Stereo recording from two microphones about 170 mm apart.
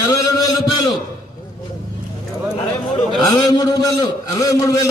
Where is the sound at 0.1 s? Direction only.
20° left (ahead or behind).